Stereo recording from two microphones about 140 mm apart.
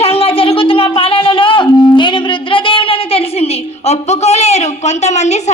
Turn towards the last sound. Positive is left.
turn(degrees=55)  # may be behind; listen again after turning